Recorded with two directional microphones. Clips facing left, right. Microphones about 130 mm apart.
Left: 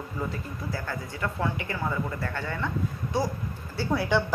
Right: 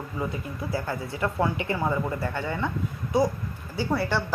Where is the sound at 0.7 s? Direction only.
20° right (ahead or behind).